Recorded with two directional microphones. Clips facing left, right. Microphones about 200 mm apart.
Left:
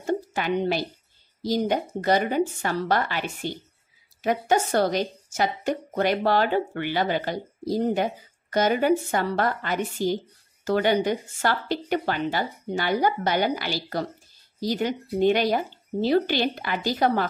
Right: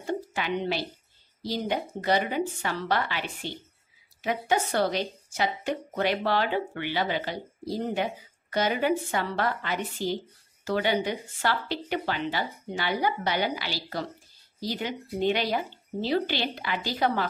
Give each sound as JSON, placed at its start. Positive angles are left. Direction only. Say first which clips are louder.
{"t": 0.0, "sound": "a woman's voice", "louder": "left 4 dB", "side_deg": 45}